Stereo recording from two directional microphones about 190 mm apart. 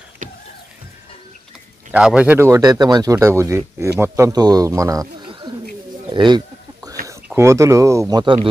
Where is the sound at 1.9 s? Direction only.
5° right (ahead or behind); by 6.4 s 25° right (ahead or behind).